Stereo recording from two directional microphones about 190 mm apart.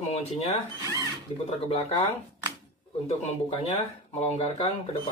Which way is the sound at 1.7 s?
35° left (ahead or behind).